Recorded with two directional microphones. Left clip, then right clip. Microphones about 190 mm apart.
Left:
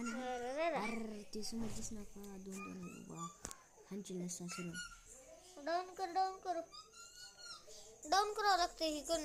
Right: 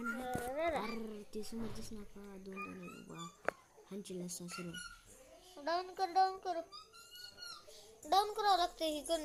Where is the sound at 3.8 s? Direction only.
15° left (ahead or behind).